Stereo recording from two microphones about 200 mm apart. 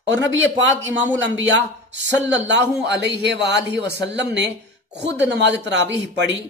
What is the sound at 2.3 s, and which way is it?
A man's voice, 60° right (ahead or behind).